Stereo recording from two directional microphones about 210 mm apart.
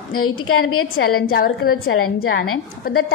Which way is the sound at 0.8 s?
45° left (ahead or behind).